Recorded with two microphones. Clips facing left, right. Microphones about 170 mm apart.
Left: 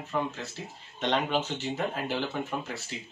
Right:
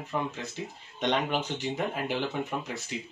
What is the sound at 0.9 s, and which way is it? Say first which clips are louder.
Speech: even; 10° right (ahead or behind).